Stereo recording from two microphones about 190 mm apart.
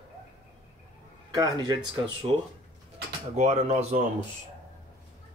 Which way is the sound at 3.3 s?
35° right (ahead or behind).